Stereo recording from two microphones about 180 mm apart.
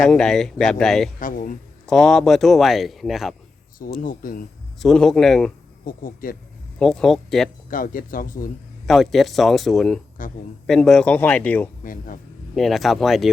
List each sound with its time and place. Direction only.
0.0 s speech: 5° left (ahead or behind)
1.2 s speech: 50° left (ahead or behind)
1.9 s speech: centre (ahead or behind)
4.0 s speech: 50° left (ahead or behind)
4.8 s speech: centre (ahead or behind)
5.8 s speech: 50° left (ahead or behind)
6.7 s speech: 5° left (ahead or behind)
7.7 s speech: 50° left (ahead or behind)
8.9 s speech: centre (ahead or behind)
10.2 s speech: 45° left (ahead or behind)
10.7 s speech: 5° left (ahead or behind)
11.8 s speech: 50° left (ahead or behind)
12.5 s speech: centre (ahead or behind)